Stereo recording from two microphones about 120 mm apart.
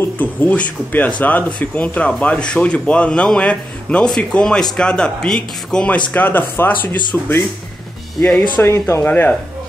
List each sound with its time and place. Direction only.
0.2 s speech: 15° left (ahead or behind)
6.1 s speech: 15° left (ahead or behind)
8.2 s speech: 10° left (ahead or behind)
8.6 s speech: 20° left (ahead or behind)